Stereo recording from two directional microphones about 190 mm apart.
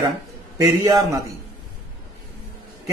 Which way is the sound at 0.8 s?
20° right (ahead or behind).